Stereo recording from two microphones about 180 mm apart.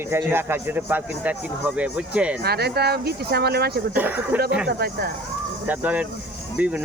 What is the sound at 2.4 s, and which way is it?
Speech, 65° right (ahead or behind).